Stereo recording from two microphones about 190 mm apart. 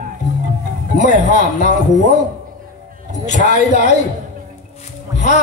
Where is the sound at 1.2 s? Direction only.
40° left (ahead or behind).